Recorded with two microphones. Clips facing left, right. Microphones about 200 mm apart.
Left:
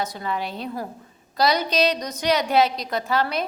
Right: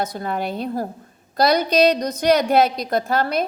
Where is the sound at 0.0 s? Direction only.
55° right (ahead or behind).